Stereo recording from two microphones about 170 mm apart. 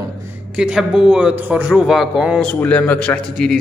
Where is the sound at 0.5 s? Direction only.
5° right (ahead or behind).